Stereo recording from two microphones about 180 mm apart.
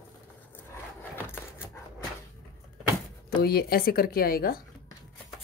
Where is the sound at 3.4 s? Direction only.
60° left (ahead or behind).